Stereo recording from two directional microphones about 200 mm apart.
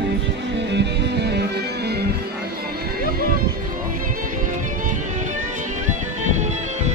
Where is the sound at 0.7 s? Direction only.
55° right (ahead or behind).